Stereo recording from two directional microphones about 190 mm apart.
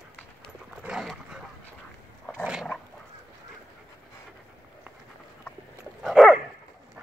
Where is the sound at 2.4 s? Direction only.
5° right (ahead or behind).